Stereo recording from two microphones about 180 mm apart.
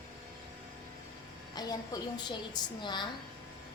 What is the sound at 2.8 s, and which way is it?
Speech, 25° left (ahead or behind).